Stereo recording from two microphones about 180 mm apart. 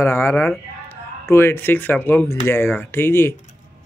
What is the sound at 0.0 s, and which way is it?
A man's voice, 15° left (ahead or behind).